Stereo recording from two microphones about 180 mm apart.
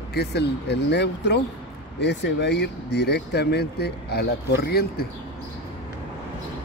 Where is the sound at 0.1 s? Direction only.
65° left (ahead or behind).